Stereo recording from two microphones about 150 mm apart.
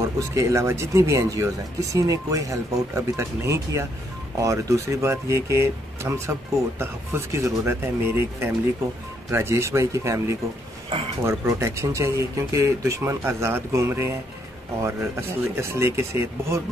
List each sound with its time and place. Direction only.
0.2 s speech: 20° right (ahead or behind)
11.2 s speech: 20° right (ahead or behind)